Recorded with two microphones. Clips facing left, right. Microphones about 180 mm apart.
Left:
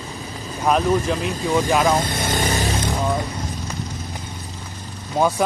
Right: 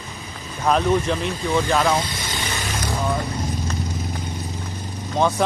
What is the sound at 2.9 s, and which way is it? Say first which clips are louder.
Vehicle: right 3 dB; 15° left (ahead or behind).